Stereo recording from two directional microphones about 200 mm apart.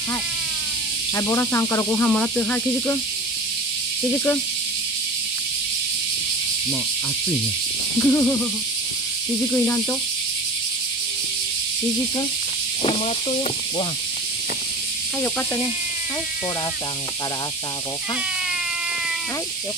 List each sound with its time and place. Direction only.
1.1 s speech: 10° left (ahead or behind)
8.0 s speech: 10° left (ahead or behind)
12.8 s speech: 30° left (ahead or behind)